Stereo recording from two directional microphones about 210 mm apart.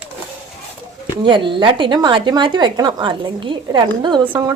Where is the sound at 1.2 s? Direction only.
25° right (ahead or behind).